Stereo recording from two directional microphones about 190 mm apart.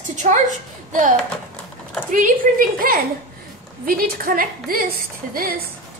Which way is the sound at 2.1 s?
45° right (ahead or behind).